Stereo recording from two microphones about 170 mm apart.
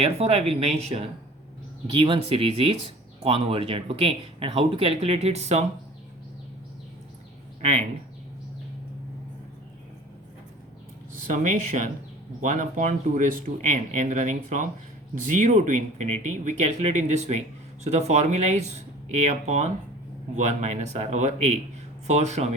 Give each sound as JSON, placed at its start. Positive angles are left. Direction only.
{"t": 0.0, "sound": "speech", "side_deg": -35}
{"t": 7.6, "sound": "speech", "side_deg": -40}
{"t": 11.3, "sound": "speech", "side_deg": -45}